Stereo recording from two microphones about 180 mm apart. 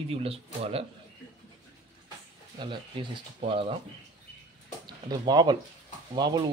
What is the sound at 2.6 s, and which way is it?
Speech, 25° right (ahead or behind).